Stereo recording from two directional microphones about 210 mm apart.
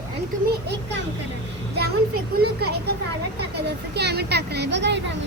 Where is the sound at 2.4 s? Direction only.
50° right (ahead or behind).